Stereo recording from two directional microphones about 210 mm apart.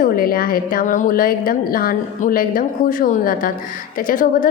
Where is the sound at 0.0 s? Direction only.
45° left (ahead or behind).